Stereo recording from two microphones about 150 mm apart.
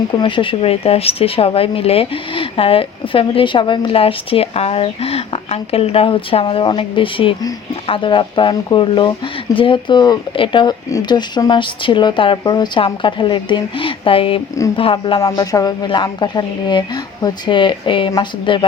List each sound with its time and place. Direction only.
0.2 s a woman's voice: 35° left (ahead or behind)
15.2 s a woman's voice: 25° left (ahead or behind)